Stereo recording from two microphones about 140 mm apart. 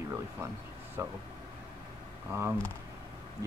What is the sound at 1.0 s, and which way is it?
Speech, 20° right (ahead or behind).